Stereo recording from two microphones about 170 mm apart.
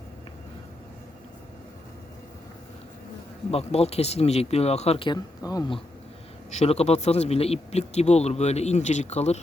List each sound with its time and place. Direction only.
3.5 s speech: 35° left (ahead or behind)
6.5 s speech: 40° left (ahead or behind)